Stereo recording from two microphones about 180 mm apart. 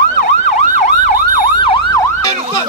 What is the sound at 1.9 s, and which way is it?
Emergency vehicle, 20° left (ahead or behind).